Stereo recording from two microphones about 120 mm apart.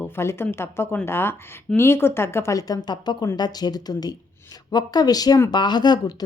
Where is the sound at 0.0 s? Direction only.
20° left (ahead or behind).